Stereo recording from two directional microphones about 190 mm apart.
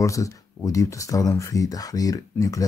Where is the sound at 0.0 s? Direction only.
15° left (ahead or behind).